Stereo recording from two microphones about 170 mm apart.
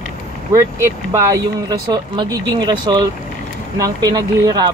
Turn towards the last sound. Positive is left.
turn(degrees=-20)  # may be behind; listen again after turning